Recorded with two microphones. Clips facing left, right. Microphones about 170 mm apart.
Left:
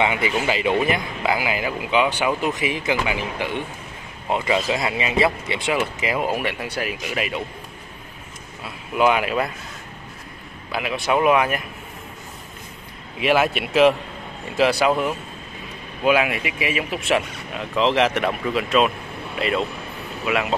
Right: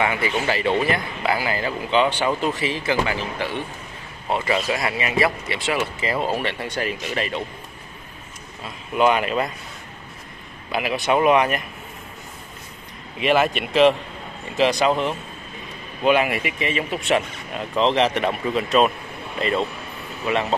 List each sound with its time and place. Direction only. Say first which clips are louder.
0.0 s speech: left 1 dB; 20° left (ahead or behind)
8.6 s speech: even; 5° left (ahead or behind)
10.7 s speech: right 1 dB; centre (ahead or behind)
13.2 s speech: even; 5° left (ahead or behind)
20.2 s speech: even; 35° right (ahead or behind)